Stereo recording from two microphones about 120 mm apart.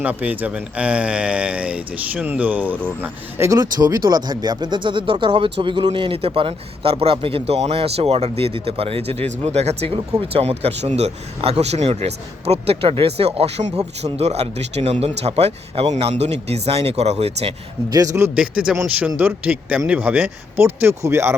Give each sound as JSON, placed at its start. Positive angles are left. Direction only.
{"t": 0.0, "sound": "speech", "side_deg": -10}
{"t": 3.6, "sound": "speech", "side_deg": -30}
{"t": 17.8, "sound": "speech", "side_deg": -30}
{"t": 18.3, "sound": "speech", "side_deg": -10}
{"t": 20.8, "sound": "speech", "side_deg": -20}